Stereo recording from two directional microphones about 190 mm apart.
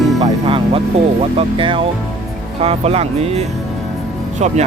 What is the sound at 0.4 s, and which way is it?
Music, 25° right (ahead or behind).